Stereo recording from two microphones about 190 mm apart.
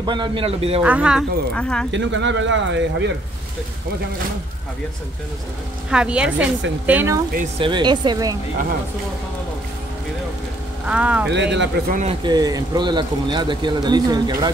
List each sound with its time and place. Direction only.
0.0 s speech: 25° right (ahead or behind)
0.8 s speech: 5° right (ahead or behind)
1.9 s speech: 75° right (ahead or behind)
5.9 s speech: 5° right (ahead or behind)
7.5 s speech: 25° right (ahead or behind)
10.9 s speech: 5° right (ahead or behind)
11.2 s speech: 70° right (ahead or behind)
11.9 s speech: 40° right (ahead or behind)
12.3 s speech: 20° right (ahead or behind)